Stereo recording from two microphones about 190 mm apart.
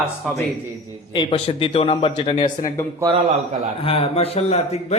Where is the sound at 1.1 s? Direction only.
30° left (ahead or behind).